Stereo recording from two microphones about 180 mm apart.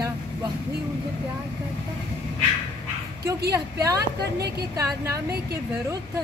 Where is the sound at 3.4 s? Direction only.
20° right (ahead or behind).